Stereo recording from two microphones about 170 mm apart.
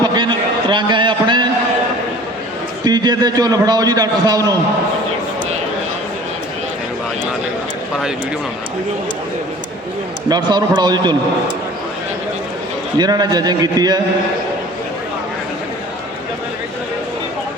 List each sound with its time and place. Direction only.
0.0 s a sound: 25° right (ahead or behind)
2.8 s a man's voice: 25° right (ahead or behind)
10.2 s a man's voice: 25° right (ahead or behind)
13.0 s a man's voice: 25° right (ahead or behind)